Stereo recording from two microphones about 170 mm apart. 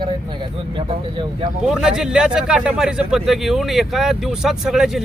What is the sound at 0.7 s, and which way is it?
Speech, 25° right (ahead or behind).